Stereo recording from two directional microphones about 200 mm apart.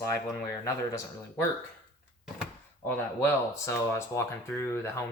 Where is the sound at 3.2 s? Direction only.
15° left (ahead or behind).